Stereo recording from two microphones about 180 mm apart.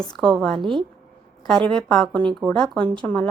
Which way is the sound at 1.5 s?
5° left (ahead or behind).